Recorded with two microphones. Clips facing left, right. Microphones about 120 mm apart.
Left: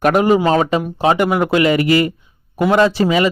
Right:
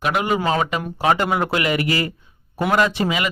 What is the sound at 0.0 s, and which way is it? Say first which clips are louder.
Speech: left 8 dB; 40° left (ahead or behind).